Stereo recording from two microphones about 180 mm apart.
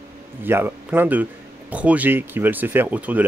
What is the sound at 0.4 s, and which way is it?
Speech, 10° right (ahead or behind).